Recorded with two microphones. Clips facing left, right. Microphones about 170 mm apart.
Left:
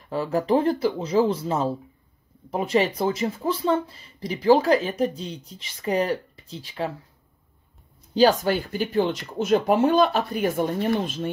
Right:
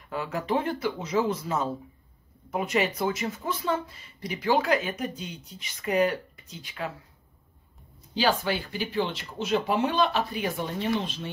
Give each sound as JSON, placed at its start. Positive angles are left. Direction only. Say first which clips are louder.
{"t": 0.1, "sound": "speech", "louder": "left 6 dB", "side_deg": 35}
{"t": 8.1, "sound": "speech", "louder": "left 7 dB", "side_deg": 40}